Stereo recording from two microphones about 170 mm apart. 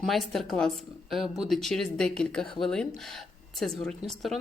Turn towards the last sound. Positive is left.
turn(degrees=5)  # may be behind; listen again after turning